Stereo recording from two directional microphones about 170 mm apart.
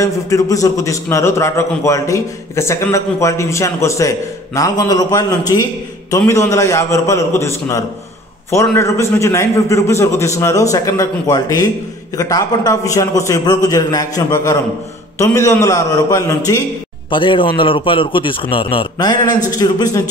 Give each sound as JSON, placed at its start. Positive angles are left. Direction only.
{"t": 0.0, "sound": "a man's voice", "side_deg": 20}
{"t": 17.1, "sound": "a man's voice", "side_deg": 30}